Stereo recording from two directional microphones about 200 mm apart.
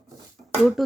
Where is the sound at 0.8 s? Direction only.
Centre (ahead or behind).